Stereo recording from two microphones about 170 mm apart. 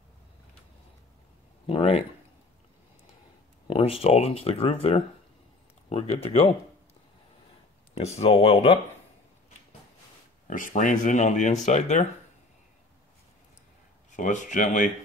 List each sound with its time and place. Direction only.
1.7 s speech: 35° left (ahead or behind)
3.6 s speech: 35° left (ahead or behind)
7.9 s speech: 35° left (ahead or behind)
10.4 s speech: 50° left (ahead or behind)
14.1 s speech: 45° left (ahead or behind)